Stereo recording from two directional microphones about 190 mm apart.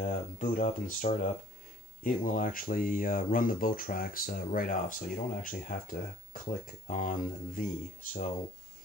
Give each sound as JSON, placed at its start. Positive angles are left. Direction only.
{"t": 0.0, "sound": "speech", "side_deg": 45}